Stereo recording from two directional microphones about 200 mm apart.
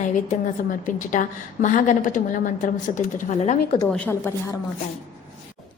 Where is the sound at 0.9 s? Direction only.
40° left (ahead or behind).